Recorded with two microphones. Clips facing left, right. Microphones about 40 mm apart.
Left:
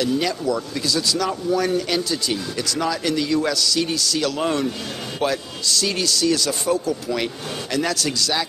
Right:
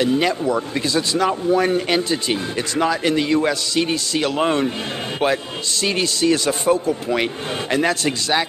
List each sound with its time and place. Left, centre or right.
0.0 s speech: right